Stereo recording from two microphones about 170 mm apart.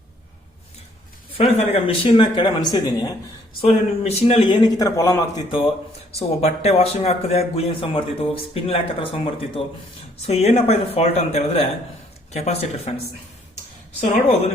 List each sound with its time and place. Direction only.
1.3 s a man's voice: 35° left (ahead or behind)
3.6 s a man's voice: 35° left (ahead or behind)
6.1 s speech: 35° left (ahead or behind)
14.0 s speech: 40° left (ahead or behind)